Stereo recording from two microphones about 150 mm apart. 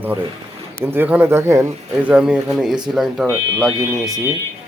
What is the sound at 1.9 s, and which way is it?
Speech, 5° right (ahead or behind).